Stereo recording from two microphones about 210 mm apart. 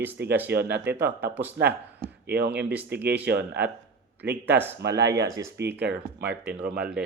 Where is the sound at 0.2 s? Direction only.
50° right (ahead or behind).